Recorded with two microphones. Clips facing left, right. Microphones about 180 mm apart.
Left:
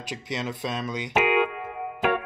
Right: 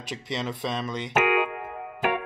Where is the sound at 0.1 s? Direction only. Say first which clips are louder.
Even; 5° left (ahead or behind).